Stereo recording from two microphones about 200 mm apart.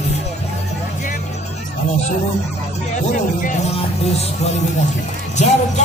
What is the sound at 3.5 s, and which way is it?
Speech, 30° left (ahead or behind).